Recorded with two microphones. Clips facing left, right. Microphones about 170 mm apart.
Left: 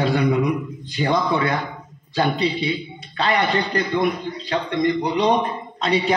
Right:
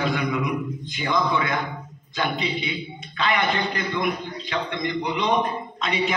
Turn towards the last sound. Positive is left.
turn(degrees=35)  # may be behind; listen again after turning